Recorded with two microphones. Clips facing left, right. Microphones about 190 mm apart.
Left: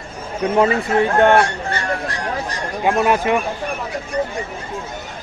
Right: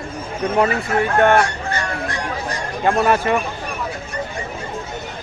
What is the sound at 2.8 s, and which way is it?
Speech, 10° left (ahead or behind).